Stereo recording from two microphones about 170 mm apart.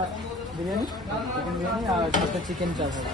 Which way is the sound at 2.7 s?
25° right (ahead or behind).